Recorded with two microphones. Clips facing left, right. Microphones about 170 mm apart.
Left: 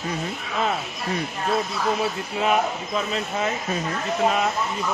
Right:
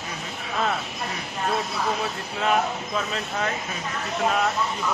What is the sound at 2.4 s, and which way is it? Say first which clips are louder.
Speech: left 1 dB; 5° left (ahead or behind).